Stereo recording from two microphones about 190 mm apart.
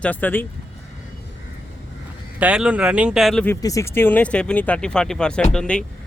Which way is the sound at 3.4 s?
15° left (ahead or behind).